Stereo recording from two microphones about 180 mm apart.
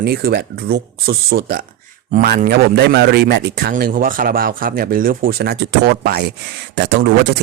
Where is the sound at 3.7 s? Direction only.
50° right (ahead or behind).